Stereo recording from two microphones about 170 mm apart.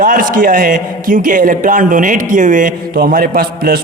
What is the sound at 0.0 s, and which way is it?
A man's voice, 50° right (ahead or behind).